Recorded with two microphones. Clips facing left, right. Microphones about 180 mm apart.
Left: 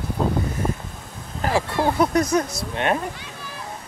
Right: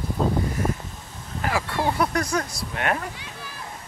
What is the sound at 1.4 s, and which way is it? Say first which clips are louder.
Speech: left 4 dB; 25° left (ahead or behind).